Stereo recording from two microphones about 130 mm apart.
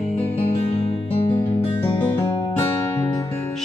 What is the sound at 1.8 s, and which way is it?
Music, 15° left (ahead or behind).